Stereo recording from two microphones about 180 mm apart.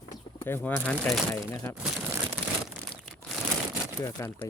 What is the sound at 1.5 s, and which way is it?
Speech, 15° left (ahead or behind).